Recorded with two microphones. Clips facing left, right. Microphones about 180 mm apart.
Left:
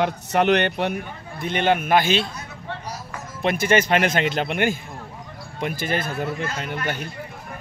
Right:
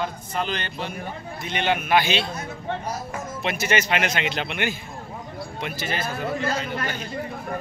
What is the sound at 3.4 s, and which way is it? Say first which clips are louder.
Speech: left 5 dB; 50° left (ahead or behind).